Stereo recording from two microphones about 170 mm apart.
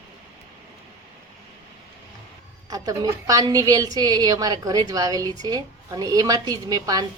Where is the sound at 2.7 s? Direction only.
20° right (ahead or behind).